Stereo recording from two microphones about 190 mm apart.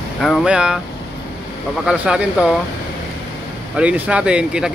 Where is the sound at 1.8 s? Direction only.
5° right (ahead or behind).